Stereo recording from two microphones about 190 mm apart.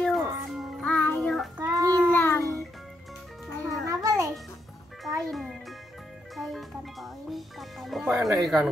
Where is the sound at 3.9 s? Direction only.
20° right (ahead or behind).